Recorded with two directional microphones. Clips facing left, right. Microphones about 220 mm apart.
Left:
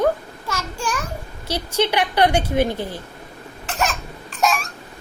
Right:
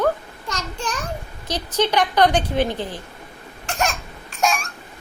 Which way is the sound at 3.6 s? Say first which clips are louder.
Even; centre (ahead or behind).